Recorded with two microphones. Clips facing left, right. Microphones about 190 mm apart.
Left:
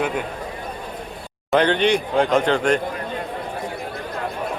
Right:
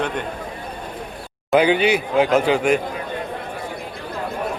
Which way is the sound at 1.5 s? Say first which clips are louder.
Right 1 dB; 5° right (ahead or behind).